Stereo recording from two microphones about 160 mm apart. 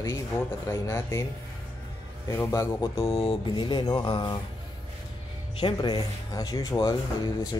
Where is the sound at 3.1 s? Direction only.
40° left (ahead or behind).